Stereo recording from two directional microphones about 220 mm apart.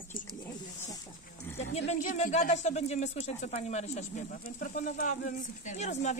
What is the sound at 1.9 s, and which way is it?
Speech, 30° left (ahead or behind).